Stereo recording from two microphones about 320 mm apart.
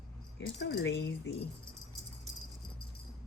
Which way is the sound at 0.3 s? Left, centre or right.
Left.